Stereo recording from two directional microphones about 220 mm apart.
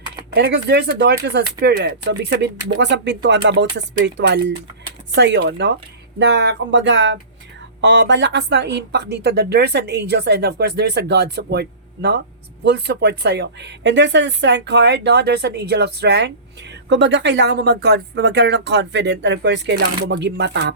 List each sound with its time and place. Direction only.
0.3 s a woman's voice: 50° right (ahead or behind)